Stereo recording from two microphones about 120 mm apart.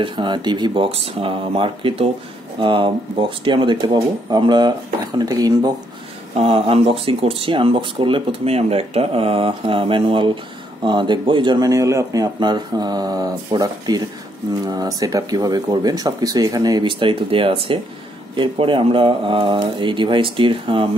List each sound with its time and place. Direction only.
0.0 s speech: 40° right (ahead or behind)
6.3 s speech: 55° right (ahead or behind)